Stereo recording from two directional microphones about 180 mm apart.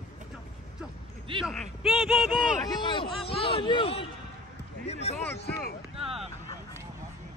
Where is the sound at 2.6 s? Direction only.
25° left (ahead or behind).